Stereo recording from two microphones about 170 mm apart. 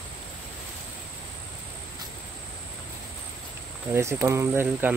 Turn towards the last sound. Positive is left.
turn(degrees=-15)  # may be behind; listen again after turning